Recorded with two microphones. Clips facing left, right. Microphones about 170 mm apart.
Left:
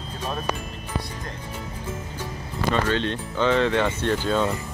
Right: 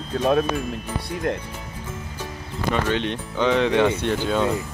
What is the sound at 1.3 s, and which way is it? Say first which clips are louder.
Speech: right 12 dB; 65° right (ahead or behind).